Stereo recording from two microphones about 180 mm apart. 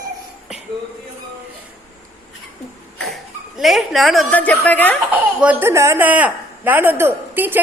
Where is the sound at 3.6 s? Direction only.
Centre (ahead or behind).